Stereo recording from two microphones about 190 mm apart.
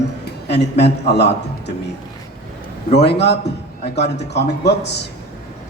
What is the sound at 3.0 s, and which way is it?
Speech, 60° left (ahead or behind).